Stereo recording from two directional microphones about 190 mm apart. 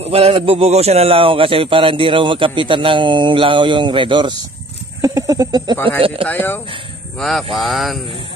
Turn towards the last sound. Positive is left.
turn(degrees=0)  # may be behind; listen again after turning